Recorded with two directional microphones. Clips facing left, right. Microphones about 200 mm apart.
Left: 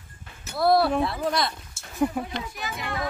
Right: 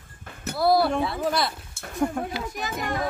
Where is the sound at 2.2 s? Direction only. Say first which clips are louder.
Right 1 dB; 5° left (ahead or behind).